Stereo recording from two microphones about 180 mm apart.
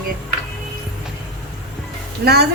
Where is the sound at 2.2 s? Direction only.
65° right (ahead or behind).